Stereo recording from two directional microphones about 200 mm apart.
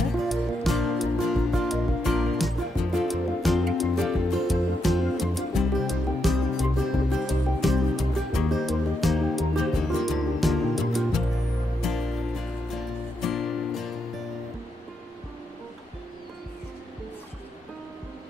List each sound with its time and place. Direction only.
0.2 s music: centre (ahead or behind)
13.2 s music: centre (ahead or behind)